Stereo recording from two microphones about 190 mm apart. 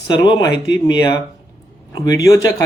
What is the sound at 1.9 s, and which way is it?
Speech, 20° left (ahead or behind).